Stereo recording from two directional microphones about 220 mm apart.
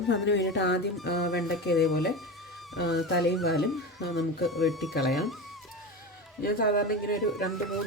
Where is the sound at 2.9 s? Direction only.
50° left (ahead or behind).